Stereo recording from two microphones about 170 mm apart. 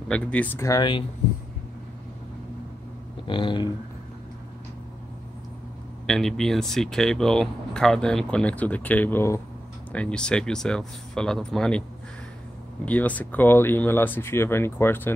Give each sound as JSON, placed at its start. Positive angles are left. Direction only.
{"t": 0.1, "sound": "speech", "side_deg": 5}
{"t": 0.7, "sound": "speech", "side_deg": 30}
{"t": 3.3, "sound": "speech", "side_deg": 30}
{"t": 6.0, "sound": "speech", "side_deg": 5}
{"t": 12.8, "sound": "speech", "side_deg": 10}